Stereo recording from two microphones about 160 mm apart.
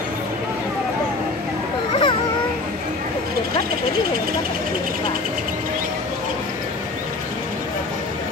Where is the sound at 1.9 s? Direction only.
30° left (ahead or behind).